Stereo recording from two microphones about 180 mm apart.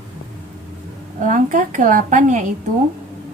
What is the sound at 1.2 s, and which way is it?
A woman's voice, 45° right (ahead or behind).